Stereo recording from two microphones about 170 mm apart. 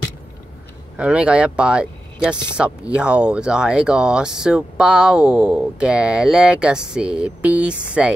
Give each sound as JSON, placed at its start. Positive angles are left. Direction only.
{"t": 0.9, "sound": "speech", "side_deg": -5}